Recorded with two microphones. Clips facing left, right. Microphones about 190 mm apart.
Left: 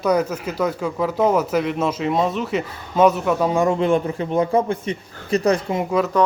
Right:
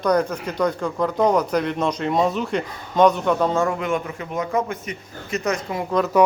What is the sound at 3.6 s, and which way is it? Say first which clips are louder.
A man's voice: left 6 dB; 30° left (ahead or behind).